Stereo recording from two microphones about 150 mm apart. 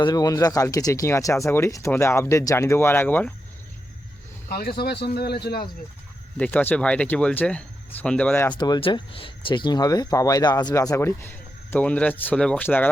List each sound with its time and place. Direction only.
0.0 s speech: 25° left (ahead or behind)
4.4 s speech: 90° left
6.3 s speech: 10° left (ahead or behind)
8.5 s speech: 30° left (ahead or behind)